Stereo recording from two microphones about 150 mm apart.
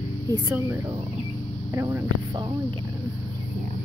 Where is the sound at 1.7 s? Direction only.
20° right (ahead or behind).